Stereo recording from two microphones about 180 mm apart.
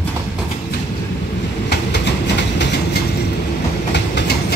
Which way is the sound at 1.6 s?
75° left (ahead or behind).